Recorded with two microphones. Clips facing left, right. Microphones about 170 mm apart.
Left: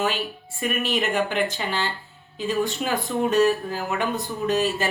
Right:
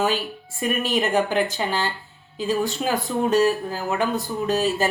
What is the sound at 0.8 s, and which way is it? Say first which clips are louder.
Speech: right 2 dB; 40° right (ahead or behind).